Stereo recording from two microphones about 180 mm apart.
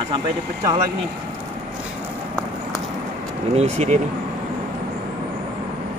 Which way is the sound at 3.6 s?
40° right (ahead or behind).